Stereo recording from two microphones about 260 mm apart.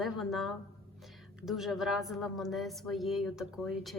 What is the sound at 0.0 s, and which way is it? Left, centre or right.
Speech, centre.